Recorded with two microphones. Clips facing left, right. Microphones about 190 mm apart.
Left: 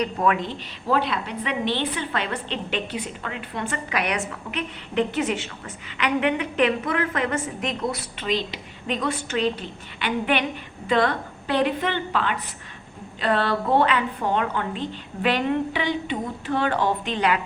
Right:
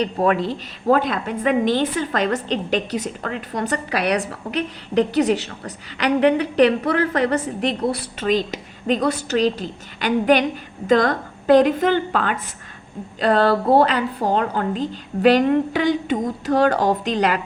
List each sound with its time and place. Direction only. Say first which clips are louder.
0.0 s a woman's voice: right 4 dB; 35° right (ahead or behind)
8.2 s a woman's voice: right 6 dB; 45° right (ahead or behind)